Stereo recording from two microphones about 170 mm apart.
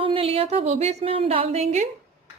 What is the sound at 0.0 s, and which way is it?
A woman's voice, 30° right (ahead or behind).